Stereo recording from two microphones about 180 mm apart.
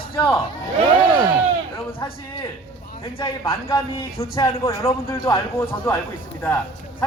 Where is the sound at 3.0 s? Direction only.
30° left (ahead or behind); by 6.0 s 15° left (ahead or behind).